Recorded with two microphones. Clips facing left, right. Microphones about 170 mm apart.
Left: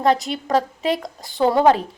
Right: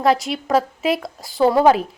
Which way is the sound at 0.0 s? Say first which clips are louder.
Right 1 dB; centre (ahead or behind).